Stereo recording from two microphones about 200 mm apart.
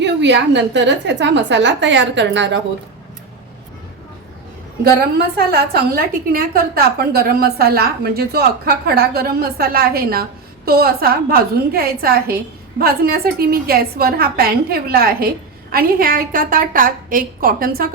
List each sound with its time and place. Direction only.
0.0 s a woman's voice: 60° right (ahead or behind)
5.5 s a woman's voice: 50° right (ahead or behind)